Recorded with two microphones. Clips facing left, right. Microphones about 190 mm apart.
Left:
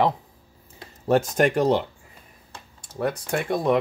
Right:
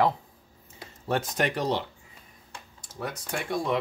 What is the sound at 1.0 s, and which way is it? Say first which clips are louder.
Speech: left 8 dB; 45° left (ahead or behind).